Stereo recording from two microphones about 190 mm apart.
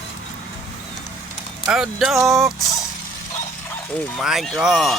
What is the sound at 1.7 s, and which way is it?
Speech, 5° right (ahead or behind).